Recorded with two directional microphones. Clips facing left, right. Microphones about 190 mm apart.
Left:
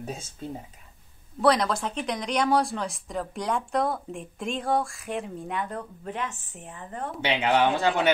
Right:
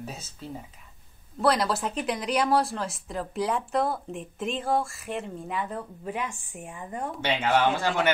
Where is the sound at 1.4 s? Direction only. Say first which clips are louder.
Left 2 dB; 5° right (ahead or behind).